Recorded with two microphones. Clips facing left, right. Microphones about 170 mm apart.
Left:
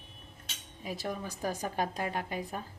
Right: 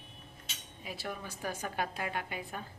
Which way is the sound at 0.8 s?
40° left (ahead or behind).